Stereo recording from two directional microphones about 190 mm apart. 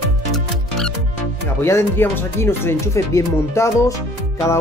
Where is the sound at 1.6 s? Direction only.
15° left (ahead or behind).